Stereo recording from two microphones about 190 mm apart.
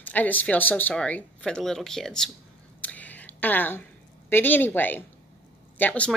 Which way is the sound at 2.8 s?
10° left (ahead or behind).